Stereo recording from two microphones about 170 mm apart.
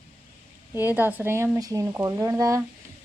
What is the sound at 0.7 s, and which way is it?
Speech, 10° right (ahead or behind).